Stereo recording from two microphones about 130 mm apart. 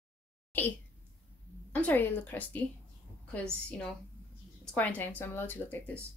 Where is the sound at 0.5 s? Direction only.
15° left (ahead or behind).